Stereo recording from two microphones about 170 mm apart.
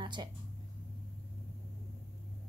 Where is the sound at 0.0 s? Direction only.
25° right (ahead or behind).